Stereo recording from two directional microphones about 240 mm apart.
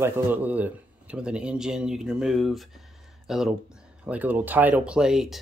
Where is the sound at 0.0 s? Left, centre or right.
Centre.